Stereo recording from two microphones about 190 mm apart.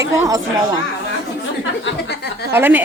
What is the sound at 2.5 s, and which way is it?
Speech, 10° right (ahead or behind).